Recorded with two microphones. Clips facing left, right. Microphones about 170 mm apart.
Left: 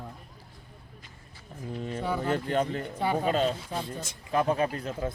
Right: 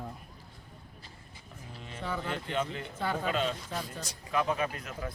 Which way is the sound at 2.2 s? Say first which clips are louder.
Left 7 dB; 40° left (ahead or behind).